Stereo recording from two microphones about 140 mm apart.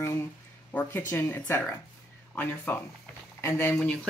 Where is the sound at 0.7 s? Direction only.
15° left (ahead or behind).